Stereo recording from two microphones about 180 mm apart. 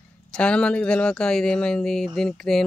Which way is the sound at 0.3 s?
5° left (ahead or behind).